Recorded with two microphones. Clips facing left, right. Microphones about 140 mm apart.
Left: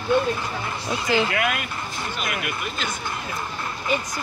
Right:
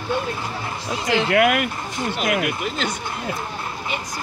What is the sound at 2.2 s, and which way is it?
Speech, 85° right.